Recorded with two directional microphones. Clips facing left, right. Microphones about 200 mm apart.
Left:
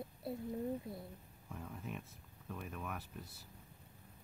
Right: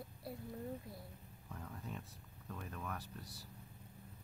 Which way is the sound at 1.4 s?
5° left (ahead or behind).